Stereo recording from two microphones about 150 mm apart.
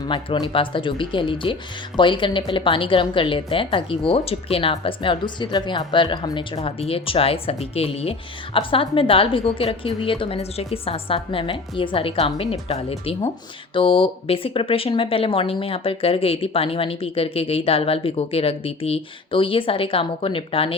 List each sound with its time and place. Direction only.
0.0 s speech: 30° left (ahead or behind)